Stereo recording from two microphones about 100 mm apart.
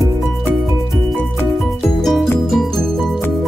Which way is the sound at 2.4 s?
5° left (ahead or behind).